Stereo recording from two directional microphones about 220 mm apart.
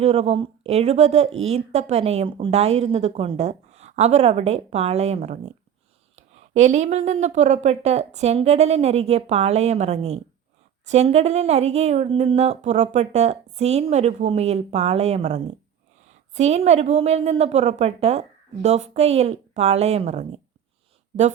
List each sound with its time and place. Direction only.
0.0 s speech: 30° right (ahead or behind)